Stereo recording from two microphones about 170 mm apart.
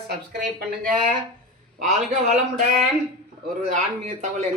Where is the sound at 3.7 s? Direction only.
40° right (ahead or behind).